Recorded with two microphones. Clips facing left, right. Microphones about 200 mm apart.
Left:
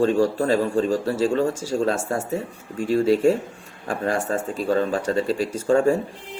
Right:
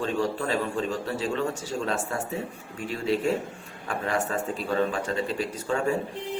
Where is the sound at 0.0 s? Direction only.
40° left (ahead or behind).